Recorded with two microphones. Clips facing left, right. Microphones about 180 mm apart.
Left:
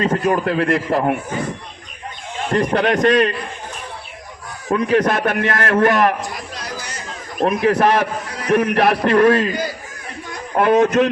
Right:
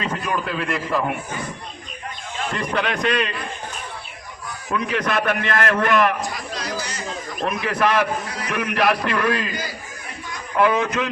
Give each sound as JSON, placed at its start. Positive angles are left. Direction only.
{"t": 0.0, "sound": "a man's voice", "side_deg": 45}
{"t": 2.5, "sound": "a man's voice", "side_deg": 55}
{"t": 4.7, "sound": "a man's voice", "side_deg": 45}
{"t": 7.3, "sound": "a man's voice", "side_deg": 50}